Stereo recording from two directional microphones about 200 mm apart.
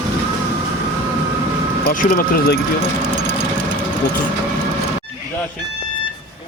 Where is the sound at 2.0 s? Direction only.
45° left (ahead or behind).